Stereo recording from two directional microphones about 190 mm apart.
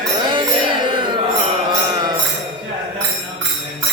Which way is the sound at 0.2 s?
25° right (ahead or behind).